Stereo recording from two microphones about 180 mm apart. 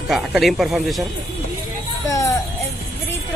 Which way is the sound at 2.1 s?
15° left (ahead or behind).